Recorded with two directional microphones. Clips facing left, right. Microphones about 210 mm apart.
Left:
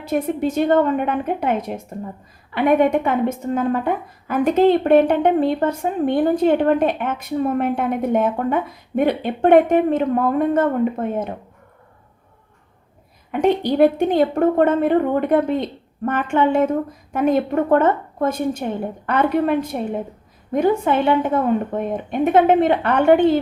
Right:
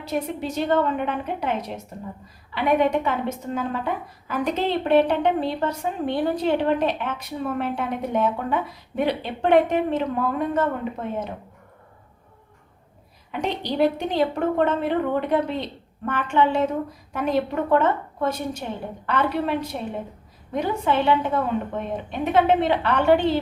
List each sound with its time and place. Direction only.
0.0 s a woman's voice: 50° left (ahead or behind)
13.3 s a woman's voice: 50° left (ahead or behind)